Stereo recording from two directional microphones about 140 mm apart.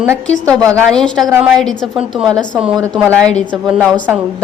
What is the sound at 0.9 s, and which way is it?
A woman's voice, 5° left (ahead or behind).